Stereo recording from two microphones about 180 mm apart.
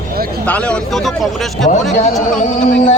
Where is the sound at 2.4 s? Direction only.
45° left (ahead or behind).